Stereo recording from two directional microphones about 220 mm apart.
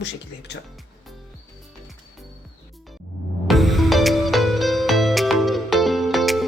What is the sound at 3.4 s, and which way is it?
Music, centre (ahead or behind).